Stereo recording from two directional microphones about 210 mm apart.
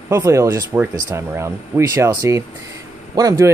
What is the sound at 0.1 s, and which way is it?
Speech, 15° right (ahead or behind).